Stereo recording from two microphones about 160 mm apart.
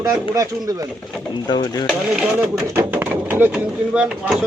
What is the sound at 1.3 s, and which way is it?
Speech, 30° left (ahead or behind).